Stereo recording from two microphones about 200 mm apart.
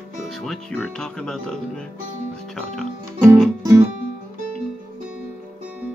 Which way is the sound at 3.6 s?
15° right (ahead or behind).